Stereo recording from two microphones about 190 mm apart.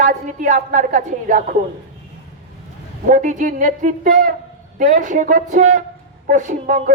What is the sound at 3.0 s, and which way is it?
A woman's voice, 40° right (ahead or behind).